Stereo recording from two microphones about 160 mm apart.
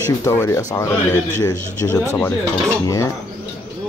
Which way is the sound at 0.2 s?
15° left (ahead or behind).